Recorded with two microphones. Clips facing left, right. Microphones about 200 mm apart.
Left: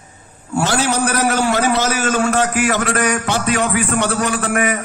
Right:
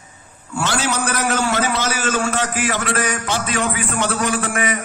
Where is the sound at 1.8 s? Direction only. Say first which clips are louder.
Left 4 dB; 40° left (ahead or behind).